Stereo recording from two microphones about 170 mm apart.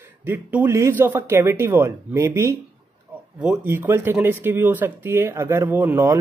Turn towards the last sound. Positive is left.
turn(degrees=-15)  # may be behind; listen again after turning